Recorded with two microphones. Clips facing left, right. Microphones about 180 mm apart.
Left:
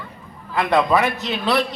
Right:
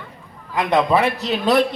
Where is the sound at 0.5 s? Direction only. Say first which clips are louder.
Even; 20° right (ahead or behind); by 1.6 s 40° right (ahead or behind).